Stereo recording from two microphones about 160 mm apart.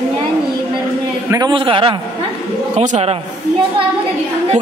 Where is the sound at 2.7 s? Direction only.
45° right (ahead or behind).